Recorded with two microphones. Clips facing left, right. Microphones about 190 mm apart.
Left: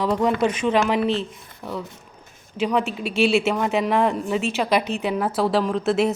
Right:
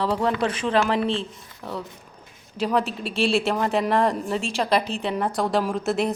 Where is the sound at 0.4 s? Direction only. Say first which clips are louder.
Left 4 dB; 30° right (ahead or behind).